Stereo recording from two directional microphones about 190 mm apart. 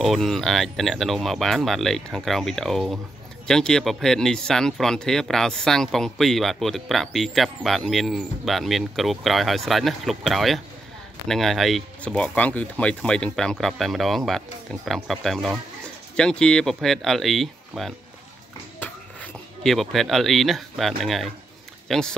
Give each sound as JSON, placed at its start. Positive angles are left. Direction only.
{"t": 0.0, "sound": "speech", "side_deg": 0}
{"t": 19.6, "sound": "speech", "side_deg": 0}